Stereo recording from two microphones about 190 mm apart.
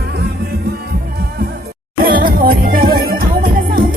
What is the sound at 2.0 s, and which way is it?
Music, 50° right (ahead or behind).